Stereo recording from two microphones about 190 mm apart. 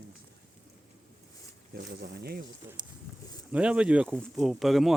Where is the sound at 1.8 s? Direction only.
55° right (ahead or behind).